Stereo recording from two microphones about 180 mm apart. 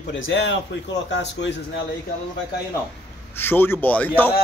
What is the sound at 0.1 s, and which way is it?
Speech, 90° left.